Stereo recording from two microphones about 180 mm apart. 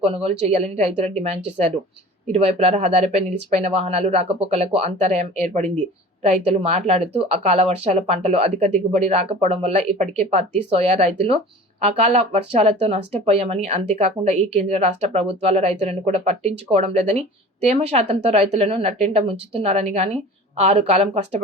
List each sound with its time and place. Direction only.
0.0 s speech: 35° right (ahead or behind)